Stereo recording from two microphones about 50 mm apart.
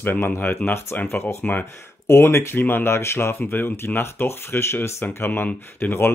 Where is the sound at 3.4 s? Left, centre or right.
Left.